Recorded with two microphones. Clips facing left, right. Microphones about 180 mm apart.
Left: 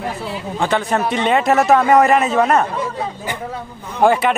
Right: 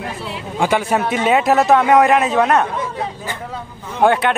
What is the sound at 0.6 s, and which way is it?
A man's voice, 10° right (ahead or behind).